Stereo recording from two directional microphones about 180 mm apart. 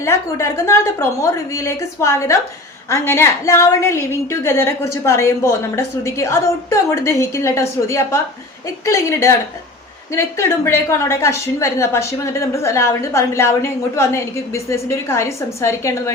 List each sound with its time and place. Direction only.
0.0 s a woman's voice: 15° left (ahead or behind)